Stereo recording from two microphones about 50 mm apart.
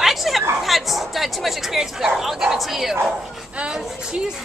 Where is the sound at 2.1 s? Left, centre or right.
Centre.